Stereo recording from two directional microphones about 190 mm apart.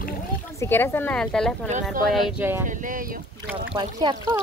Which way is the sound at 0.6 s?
10° left (ahead or behind).